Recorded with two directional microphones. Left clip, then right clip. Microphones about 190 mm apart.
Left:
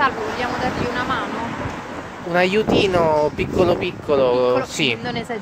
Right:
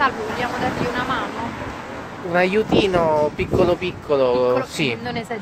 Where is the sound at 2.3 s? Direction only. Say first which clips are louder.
Left 1 dB; 30° left (ahead or behind).